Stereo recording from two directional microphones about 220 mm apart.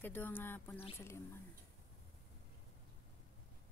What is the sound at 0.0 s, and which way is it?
Speech, 10° left (ahead or behind).